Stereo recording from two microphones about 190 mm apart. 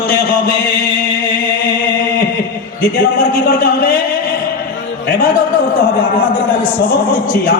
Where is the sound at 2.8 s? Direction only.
55° left (ahead or behind).